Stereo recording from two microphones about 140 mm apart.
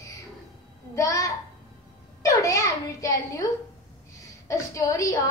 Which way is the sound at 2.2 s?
25° left (ahead or behind).